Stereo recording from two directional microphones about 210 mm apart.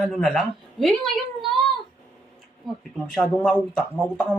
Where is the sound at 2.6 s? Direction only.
Centre (ahead or behind).